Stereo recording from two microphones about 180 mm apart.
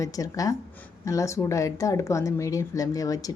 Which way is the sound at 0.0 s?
20° left (ahead or behind).